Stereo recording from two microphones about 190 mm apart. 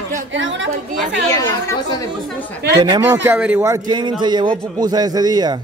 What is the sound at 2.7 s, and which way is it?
Speech, 25° right (ahead or behind).